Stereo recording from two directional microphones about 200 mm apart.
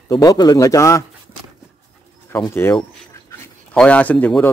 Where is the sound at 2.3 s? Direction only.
10° left (ahead or behind).